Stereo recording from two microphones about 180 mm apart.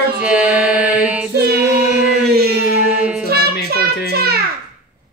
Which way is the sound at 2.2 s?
65° right (ahead or behind).